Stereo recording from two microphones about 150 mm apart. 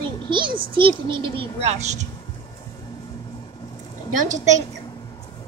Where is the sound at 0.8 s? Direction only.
35° right (ahead or behind).